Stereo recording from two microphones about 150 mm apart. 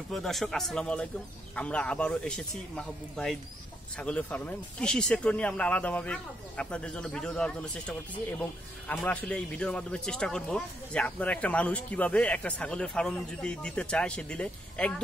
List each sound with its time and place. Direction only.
0.1 s speech: centre (ahead or behind)